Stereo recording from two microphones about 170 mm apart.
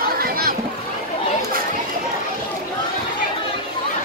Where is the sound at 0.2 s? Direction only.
60° right (ahead or behind).